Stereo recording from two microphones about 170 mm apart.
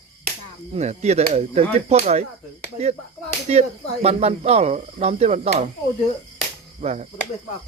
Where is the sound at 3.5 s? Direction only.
40° right (ahead or behind).